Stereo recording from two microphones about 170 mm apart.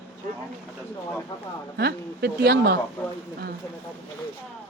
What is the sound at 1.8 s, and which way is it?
Speech, 70° right (ahead or behind).